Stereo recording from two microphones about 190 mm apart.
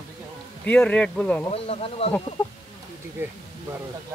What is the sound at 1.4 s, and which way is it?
Speech, 30° left (ahead or behind).